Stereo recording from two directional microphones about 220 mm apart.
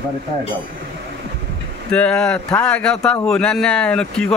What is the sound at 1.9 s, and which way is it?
A man's voice, 5° left (ahead or behind).